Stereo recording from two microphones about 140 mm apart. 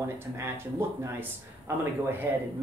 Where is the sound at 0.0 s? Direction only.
20° right (ahead or behind).